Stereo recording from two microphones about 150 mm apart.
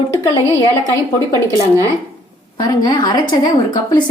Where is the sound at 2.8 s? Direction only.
25° left (ahead or behind).